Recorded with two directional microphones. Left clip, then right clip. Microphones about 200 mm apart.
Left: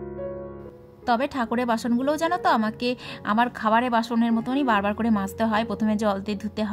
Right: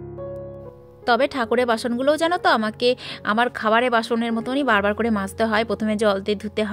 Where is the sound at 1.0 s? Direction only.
25° right (ahead or behind).